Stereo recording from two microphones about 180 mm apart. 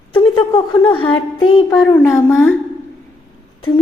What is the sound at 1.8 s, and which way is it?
Speech, 15° left (ahead or behind).